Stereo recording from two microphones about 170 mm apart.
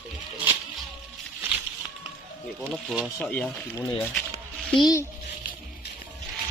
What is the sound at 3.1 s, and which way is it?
Speech, 10° left (ahead or behind).